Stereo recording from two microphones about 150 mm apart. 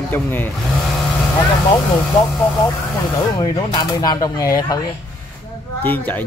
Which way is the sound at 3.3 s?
25° left (ahead or behind).